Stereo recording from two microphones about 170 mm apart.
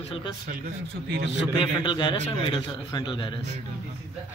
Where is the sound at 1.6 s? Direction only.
30° left (ahead or behind).